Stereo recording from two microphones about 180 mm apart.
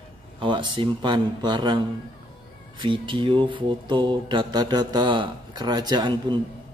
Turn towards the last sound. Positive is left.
turn(degrees=-25)  # may be behind; listen again after turning